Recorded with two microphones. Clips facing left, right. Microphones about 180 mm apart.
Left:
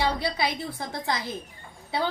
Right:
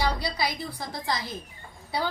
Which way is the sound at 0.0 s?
25° left (ahead or behind).